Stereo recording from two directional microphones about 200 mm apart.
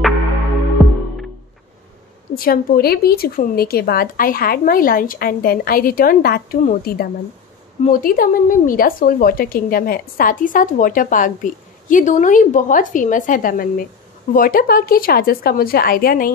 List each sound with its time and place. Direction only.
0.8 s music: centre (ahead or behind)
2.3 s a woman's voice: 45° left (ahead or behind)